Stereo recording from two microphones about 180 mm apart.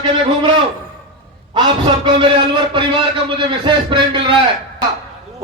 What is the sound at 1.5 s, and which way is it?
A man's voice, 25° right (ahead or behind).